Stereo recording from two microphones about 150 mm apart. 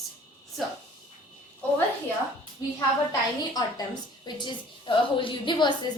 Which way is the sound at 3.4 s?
25° left (ahead or behind).